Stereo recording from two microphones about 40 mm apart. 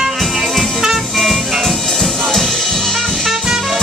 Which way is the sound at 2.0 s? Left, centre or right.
Centre.